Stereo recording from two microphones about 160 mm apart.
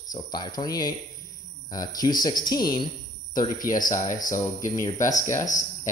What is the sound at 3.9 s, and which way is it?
A man's voice, 25° left (ahead or behind).